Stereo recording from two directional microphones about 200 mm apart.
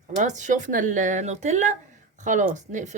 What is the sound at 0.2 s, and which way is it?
Speech, 40° right (ahead or behind).